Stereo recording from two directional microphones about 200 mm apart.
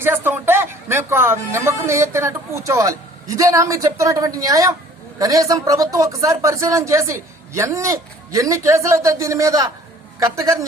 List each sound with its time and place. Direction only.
0.0 s speech: 10° right (ahead or behind)